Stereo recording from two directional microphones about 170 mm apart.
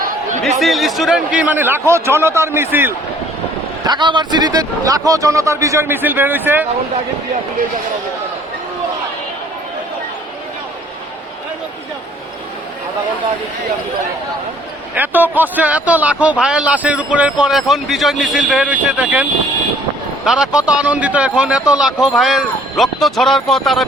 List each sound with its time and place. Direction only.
0.6 s a man's voice: centre (ahead or behind)
3.8 s a man's voice: 25° right (ahead or behind)
14.9 s a man's voice: 10° right (ahead or behind)
20.2 s speech: 5° right (ahead or behind)